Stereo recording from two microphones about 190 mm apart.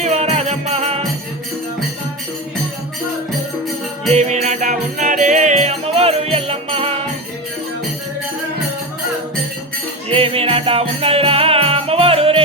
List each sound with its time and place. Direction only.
0.0 s music: 35° right (ahead or behind)
4.1 s music: 35° right (ahead or behind)
10.1 s music: 30° right (ahead or behind)